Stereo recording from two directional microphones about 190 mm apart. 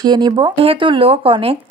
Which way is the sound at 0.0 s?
20° right (ahead or behind).